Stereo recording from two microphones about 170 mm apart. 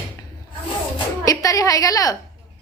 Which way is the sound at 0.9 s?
20° left (ahead or behind).